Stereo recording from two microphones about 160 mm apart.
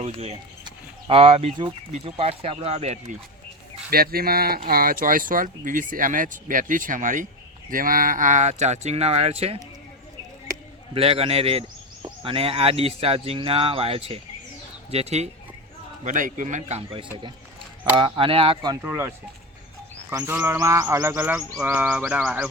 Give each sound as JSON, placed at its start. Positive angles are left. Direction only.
{"t": 0.0, "sound": "speech", "side_deg": -40}
{"t": 0.6, "sound": "chicken", "side_deg": -35}
{"t": 1.9, "sound": "speech", "side_deg": -40}
{"t": 3.8, "sound": "speech", "side_deg": -70}
{"t": 10.9, "sound": "speech", "side_deg": -35}
{"t": 16.0, "sound": "speech", "side_deg": -55}
{"t": 18.8, "sound": "bird", "side_deg": -15}